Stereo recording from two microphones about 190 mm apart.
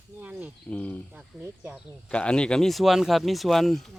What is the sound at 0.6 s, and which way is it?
Cricket, 5° left (ahead or behind).